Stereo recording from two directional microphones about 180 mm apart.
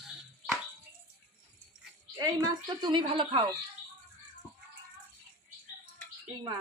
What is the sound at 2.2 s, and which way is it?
A woman's voice, 25° right (ahead or behind).